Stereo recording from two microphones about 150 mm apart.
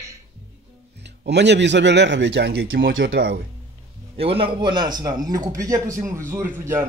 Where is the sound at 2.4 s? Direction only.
90° right.